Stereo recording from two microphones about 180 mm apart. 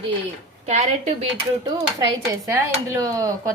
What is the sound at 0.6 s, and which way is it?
Speech, 40° right (ahead or behind).